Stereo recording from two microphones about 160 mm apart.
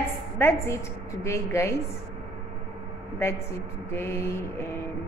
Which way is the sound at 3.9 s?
15° left (ahead or behind).